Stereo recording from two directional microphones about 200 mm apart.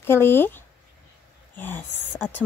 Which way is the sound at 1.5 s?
10° left (ahead or behind).